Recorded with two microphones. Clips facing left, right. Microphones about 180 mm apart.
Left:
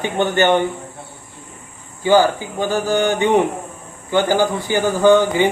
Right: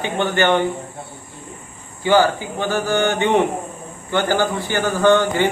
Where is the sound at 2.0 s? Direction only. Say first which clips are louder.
Left 2 dB; 15° left (ahead or behind).